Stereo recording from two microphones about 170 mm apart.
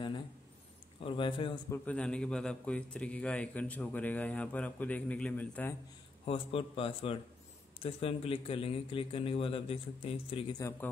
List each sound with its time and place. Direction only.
1.0 s a man's voice: 30° left (ahead or behind)
1.7 s a man's voice: 5° left (ahead or behind)
6.2 s a man's voice: 35° left (ahead or behind)
10.6 s a man's voice: 15° left (ahead or behind)